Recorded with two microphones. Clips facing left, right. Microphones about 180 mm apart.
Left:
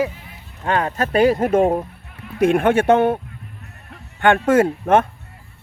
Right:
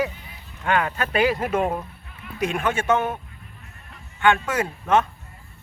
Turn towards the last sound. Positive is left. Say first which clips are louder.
# left 6 dB
turn(degrees=50)  # may be behind; listen again after turning